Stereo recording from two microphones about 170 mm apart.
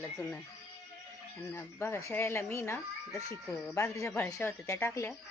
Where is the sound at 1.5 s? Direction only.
15° left (ahead or behind).